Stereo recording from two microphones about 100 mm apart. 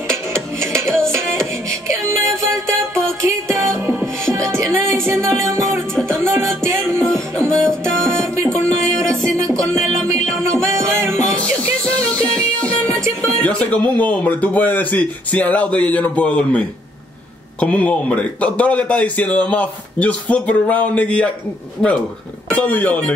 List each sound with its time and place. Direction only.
0.6 s music: 25° right (ahead or behind)
3.2 s music: 30° right (ahead or behind)
7.0 s music: 5° left (ahead or behind)
8.1 s music: 30° right (ahead or behind)
9.1 s music: 5° left (ahead or behind)
10.4 s music: 30° right (ahead or behind)
11.8 s music: 10° left (ahead or behind)
13.4 s a man's voice: 15° left (ahead or behind)